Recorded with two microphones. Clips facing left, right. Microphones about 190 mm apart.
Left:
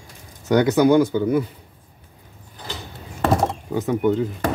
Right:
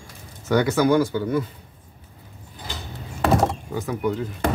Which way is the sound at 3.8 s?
25° left (ahead or behind).